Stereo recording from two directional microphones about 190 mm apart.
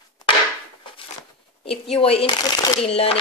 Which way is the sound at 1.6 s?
30° left (ahead or behind).